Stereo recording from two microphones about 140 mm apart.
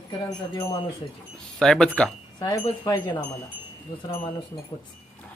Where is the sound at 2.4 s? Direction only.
25° left (ahead or behind).